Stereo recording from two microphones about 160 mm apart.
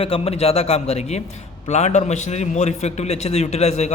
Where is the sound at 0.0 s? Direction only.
35° left (ahead or behind).